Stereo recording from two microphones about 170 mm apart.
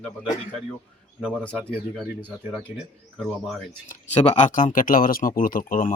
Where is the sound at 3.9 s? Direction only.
40° left (ahead or behind).